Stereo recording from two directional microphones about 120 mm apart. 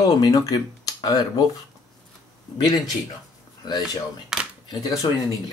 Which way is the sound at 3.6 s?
40° left (ahead or behind).